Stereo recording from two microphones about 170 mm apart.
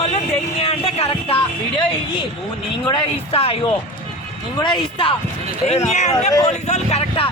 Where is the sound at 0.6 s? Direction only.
35° left (ahead or behind).